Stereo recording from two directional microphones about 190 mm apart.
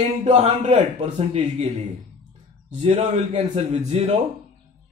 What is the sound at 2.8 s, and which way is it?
Speech, 30° right (ahead or behind).